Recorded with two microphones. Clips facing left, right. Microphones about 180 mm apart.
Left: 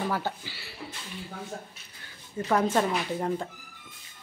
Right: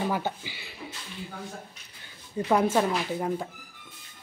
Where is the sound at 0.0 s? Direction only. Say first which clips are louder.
Right 1 dB; 15° right (ahead or behind).